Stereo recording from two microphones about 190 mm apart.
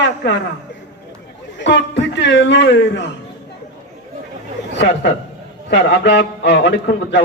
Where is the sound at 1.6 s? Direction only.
70° left (ahead or behind).